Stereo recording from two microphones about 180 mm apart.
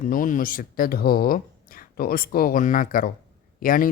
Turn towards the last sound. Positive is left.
turn(degrees=50)  # may be behind; listen again after turning